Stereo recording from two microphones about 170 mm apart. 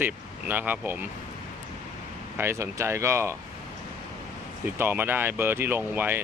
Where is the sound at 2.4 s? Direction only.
15° right (ahead or behind).